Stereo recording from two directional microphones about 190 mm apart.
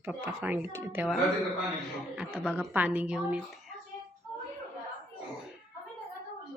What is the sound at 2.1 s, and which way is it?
A woman's voice, 5° right (ahead or behind).